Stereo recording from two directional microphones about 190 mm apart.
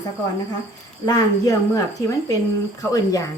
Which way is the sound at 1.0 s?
20° left (ahead or behind).